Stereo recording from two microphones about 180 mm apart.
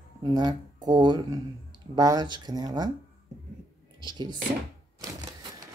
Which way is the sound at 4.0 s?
25° right (ahead or behind).